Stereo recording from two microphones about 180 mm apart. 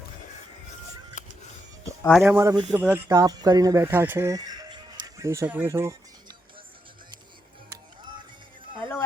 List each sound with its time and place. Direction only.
1.2 s music: 45° left (ahead or behind)
2.2 s speech: 15° right (ahead or behind)
8.8 s a sound: 15° left (ahead or behind)